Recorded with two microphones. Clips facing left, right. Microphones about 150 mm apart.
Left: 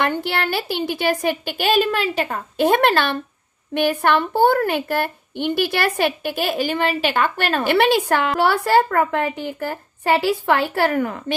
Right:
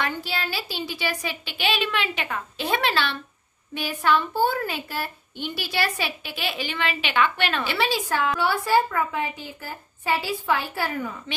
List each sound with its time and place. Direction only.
0.0 s a woman's voice: 60° left (ahead or behind)
3.7 s a woman's voice: 60° left (ahead or behind)